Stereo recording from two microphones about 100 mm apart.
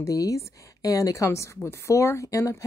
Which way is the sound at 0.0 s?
35° left (ahead or behind).